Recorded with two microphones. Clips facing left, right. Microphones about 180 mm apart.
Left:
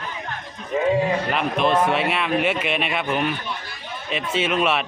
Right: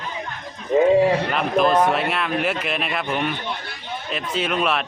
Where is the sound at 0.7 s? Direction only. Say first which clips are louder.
Right 6 dB; 30° right (ahead or behind).